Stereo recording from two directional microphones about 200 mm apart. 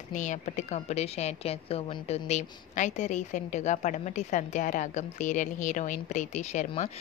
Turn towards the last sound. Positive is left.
turn(degrees=35)  # may be behind; listen again after turning